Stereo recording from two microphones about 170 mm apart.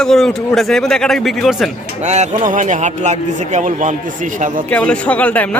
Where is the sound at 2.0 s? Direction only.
45° right (ahead or behind).